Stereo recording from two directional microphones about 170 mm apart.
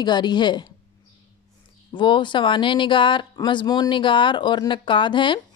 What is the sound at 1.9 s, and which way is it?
A woman's voice, 30° left (ahead or behind).